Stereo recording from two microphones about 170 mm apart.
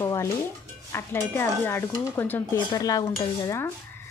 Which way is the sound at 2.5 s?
20° left (ahead or behind).